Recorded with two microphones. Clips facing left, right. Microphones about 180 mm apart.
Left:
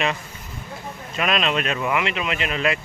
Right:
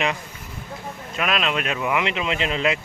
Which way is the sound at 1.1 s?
Centre (ahead or behind).